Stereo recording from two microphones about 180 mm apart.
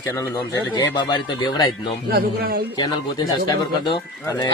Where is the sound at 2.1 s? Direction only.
60° right (ahead or behind).